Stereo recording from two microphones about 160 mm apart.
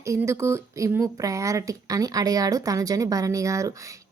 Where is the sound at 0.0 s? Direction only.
20° right (ahead or behind).